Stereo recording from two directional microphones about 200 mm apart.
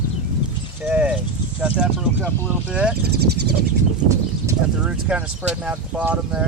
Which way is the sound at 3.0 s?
55° right (ahead or behind).